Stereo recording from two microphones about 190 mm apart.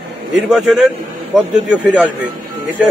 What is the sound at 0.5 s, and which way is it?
A man's voice, centre (ahead or behind).